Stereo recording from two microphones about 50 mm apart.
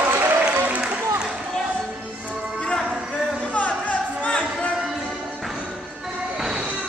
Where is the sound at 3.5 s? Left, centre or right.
Left.